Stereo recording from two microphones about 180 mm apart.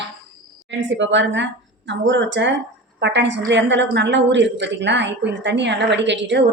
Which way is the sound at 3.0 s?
75° right (ahead or behind).